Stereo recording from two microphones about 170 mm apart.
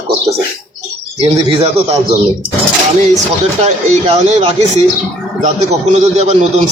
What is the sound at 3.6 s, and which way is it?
Speech, 40° right (ahead or behind).